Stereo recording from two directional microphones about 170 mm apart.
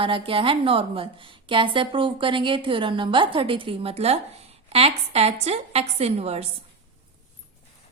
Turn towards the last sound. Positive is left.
turn(degrees=-40)  # may be behind; listen again after turning